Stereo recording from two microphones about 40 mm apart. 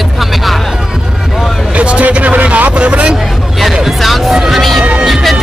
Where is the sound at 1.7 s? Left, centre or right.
Right.